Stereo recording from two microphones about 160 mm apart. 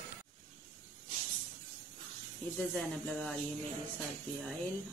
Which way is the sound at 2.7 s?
5° left (ahead or behind).